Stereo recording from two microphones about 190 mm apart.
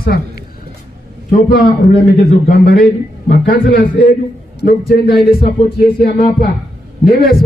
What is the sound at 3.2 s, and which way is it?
A man's voice, 50° left (ahead or behind).